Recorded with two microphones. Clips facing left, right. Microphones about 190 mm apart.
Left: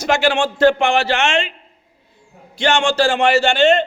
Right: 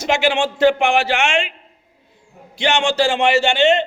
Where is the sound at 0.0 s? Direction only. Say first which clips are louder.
Left 1 dB; 20° right (ahead or behind).